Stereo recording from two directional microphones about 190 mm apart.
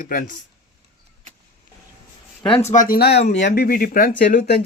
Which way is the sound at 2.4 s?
30° left (ahead or behind).